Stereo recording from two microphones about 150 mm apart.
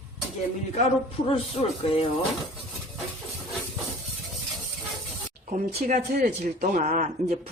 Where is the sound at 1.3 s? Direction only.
40° left (ahead or behind).